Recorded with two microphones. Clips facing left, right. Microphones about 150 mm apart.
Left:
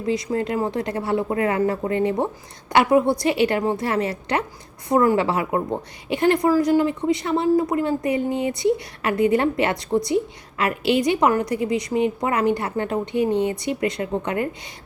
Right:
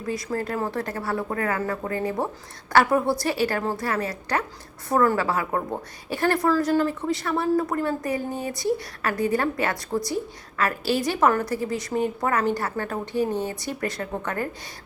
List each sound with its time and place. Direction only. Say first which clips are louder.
0.0 s a woman's voice: left 5 dB; 20° left (ahead or behind)